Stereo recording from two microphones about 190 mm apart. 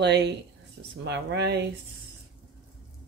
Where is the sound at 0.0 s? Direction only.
65° right (ahead or behind).